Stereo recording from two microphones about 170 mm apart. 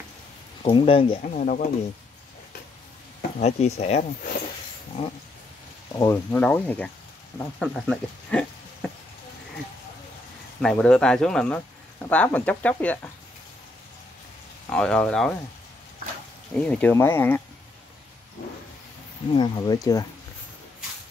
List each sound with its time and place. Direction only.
0.6 s speech: 30° left (ahead or behind)
1.2 s speech: 50° left (ahead or behind)
3.2 s speech: 45° left (ahead or behind)
5.9 s speech: 15° left (ahead or behind)
10.6 s speech: 5° left (ahead or behind)
14.7 s speech: 5° left (ahead or behind)
16.5 s speech: 5° left (ahead or behind)
19.3 s speech: 25° left (ahead or behind)